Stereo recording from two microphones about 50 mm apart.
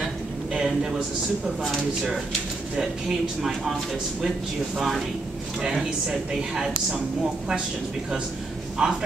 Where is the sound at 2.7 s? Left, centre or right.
Centre.